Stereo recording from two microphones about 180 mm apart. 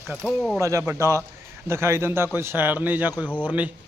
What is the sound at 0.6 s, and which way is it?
A man's voice, 15° right (ahead or behind).